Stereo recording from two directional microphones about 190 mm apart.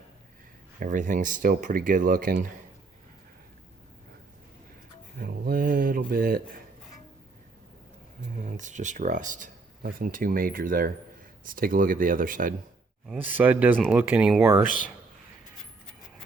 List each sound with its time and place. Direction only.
0.8 s speech: 45° right (ahead or behind)
5.2 s a sound: 50° right (ahead or behind)
8.4 s speech: 40° right (ahead or behind)
13.1 s speech: 10° right (ahead or behind)